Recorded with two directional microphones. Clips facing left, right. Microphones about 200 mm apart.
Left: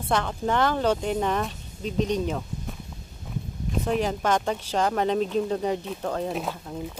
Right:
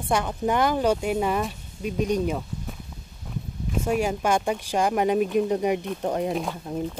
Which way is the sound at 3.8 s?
10° right (ahead or behind).